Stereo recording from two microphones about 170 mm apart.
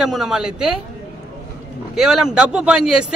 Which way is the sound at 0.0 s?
Centre (ahead or behind).